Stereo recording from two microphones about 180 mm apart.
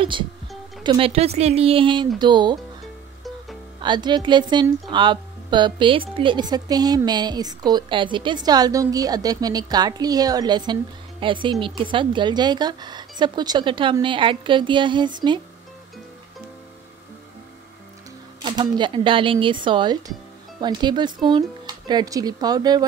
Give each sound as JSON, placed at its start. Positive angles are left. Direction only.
{"t": 0.0, "sound": "speech", "side_deg": -25}
{"t": 3.8, "sound": "speech", "side_deg": -25}
{"t": 18.4, "sound": "speech", "side_deg": -25}